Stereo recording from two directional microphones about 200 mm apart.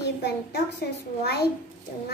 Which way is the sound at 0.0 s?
55° left (ahead or behind).